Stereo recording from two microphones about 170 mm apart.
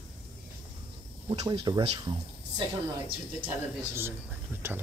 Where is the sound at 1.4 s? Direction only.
25° right (ahead or behind).